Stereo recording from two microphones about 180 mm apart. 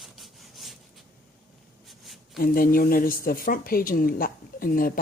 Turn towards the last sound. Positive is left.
turn(degrees=50)  # may be behind; listen again after turning